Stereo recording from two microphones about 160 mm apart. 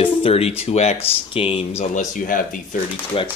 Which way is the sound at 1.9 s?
55° left (ahead or behind).